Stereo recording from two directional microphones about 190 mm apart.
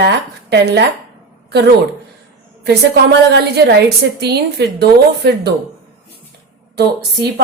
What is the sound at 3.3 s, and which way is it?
A woman's voice, 60° right (ahead or behind).